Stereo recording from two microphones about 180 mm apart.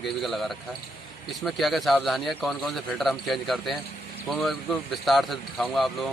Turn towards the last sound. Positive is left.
turn(degrees=0)  # may be behind; listen again after turning